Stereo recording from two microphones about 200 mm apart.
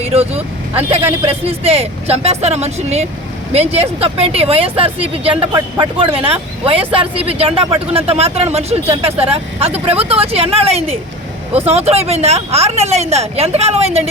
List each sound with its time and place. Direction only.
0.0 s speech: 30° right (ahead or behind)
1.5 s speech: 30° right (ahead or behind)